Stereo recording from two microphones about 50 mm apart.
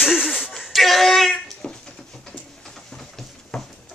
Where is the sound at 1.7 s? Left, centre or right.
Centre.